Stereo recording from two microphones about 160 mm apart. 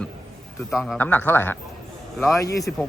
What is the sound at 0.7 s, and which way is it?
Speech, centre (ahead or behind).